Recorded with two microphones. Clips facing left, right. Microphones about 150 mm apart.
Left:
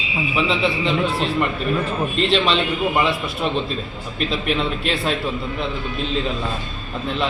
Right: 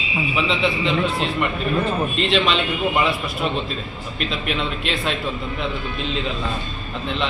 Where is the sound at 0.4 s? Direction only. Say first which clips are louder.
Left 1 dB; centre (ahead or behind).